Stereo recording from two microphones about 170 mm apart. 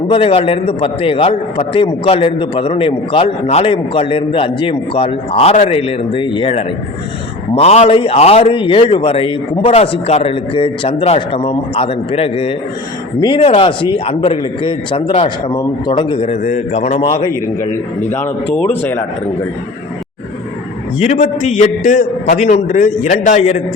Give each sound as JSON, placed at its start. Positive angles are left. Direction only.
{"t": 0.1, "sound": "a man's voice", "side_deg": 35}
{"t": 15.4, "sound": "a man's voice", "side_deg": 25}
{"t": 17.0, "sound": "speech", "side_deg": 25}
{"t": 18.1, "sound": "speech", "side_deg": 10}
{"t": 21.0, "sound": "a man's voice", "side_deg": 40}